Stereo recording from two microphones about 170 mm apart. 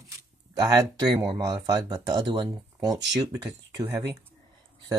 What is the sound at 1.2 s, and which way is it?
Speech, 25° right (ahead or behind).